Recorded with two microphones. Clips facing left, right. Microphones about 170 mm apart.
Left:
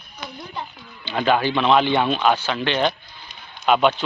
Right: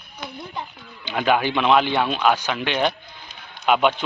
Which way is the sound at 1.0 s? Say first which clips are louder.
Left 1 dB; 10° right (ahead or behind).